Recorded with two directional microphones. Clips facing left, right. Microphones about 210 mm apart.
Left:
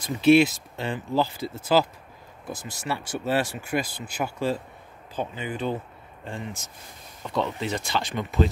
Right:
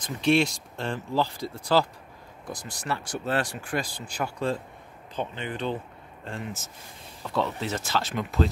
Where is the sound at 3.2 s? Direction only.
5° left (ahead or behind).